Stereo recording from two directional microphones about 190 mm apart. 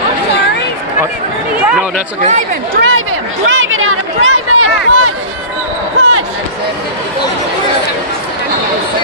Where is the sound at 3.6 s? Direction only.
90° right.